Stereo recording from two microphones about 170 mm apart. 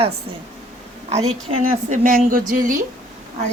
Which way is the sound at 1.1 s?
40° right (ahead or behind).